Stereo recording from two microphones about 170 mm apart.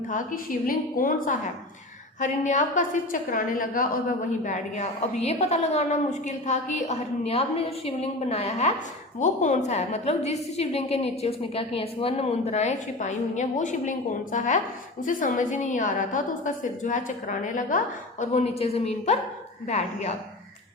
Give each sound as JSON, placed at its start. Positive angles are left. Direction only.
{"t": 0.1, "sound": "a woman's voice", "side_deg": 50}